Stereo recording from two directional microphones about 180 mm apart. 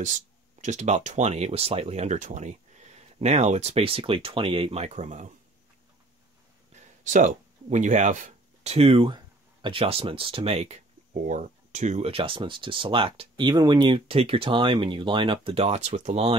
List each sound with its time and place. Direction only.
0.0 s speech: 45° right (ahead or behind)
7.1 s speech: 45° right (ahead or behind)